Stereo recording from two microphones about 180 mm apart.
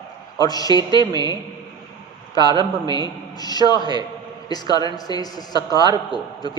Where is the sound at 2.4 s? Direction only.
25° right (ahead or behind).